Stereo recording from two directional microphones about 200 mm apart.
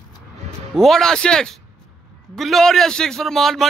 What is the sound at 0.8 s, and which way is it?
Speech, centre (ahead or behind).